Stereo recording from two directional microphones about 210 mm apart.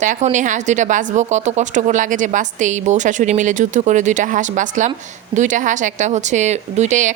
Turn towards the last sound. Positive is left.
turn(degrees=-35)  # may be behind; listen again after turning